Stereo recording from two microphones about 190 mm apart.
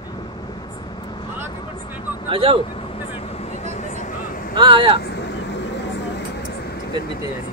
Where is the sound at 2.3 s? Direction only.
30° right (ahead or behind).